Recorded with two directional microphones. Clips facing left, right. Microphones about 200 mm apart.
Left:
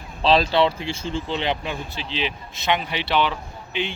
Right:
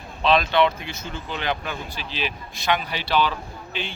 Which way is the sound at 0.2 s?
30° left (ahead or behind).